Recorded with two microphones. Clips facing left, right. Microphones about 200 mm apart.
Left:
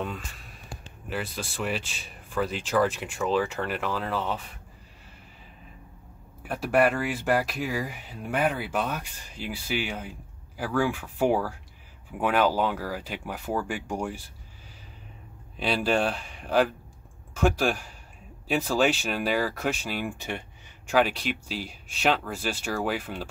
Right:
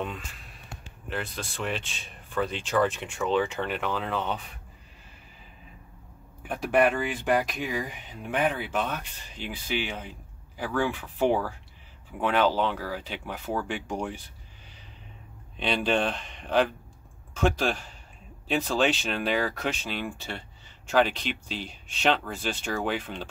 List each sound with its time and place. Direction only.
0.0 s a sound: centre (ahead or behind)
1.1 s speech: 5° left (ahead or behind)
6.4 s speech: 5° left (ahead or behind)
15.5 s speech: 5° left (ahead or behind)